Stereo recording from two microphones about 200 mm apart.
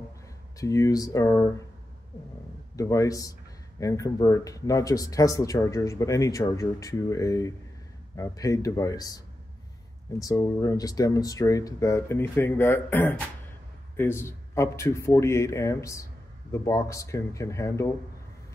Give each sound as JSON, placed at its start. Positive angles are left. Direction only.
{"t": 0.6, "sound": "speech", "side_deg": 15}
{"t": 2.7, "sound": "speech", "side_deg": 15}